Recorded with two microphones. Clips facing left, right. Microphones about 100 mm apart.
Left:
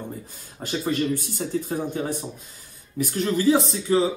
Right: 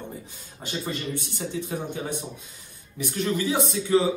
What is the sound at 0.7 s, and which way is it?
A man's voice, 45° left (ahead or behind).